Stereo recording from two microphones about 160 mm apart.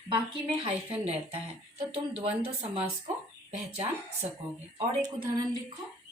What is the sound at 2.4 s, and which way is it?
Speech, 40° right (ahead or behind).